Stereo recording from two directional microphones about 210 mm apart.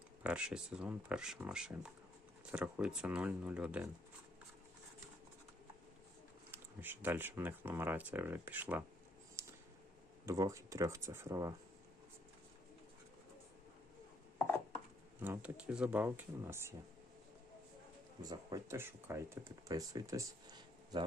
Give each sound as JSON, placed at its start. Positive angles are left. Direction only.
{"t": 0.2, "sound": "speech", "side_deg": -5}
{"t": 6.5, "sound": "speech", "side_deg": -10}
{"t": 9.4, "sound": "a sound", "side_deg": -10}
{"t": 10.2, "sound": "speech", "side_deg": -15}
{"t": 15.2, "sound": "speech", "side_deg": -10}
{"t": 18.2, "sound": "speech", "side_deg": -15}